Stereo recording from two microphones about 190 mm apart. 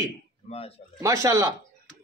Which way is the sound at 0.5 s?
30° left (ahead or behind).